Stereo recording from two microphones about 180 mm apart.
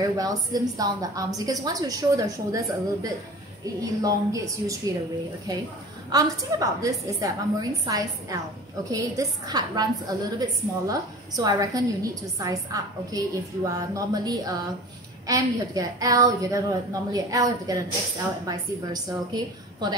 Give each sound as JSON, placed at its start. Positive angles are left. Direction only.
{"t": 0.0, "sound": "a woman's voice", "side_deg": -20}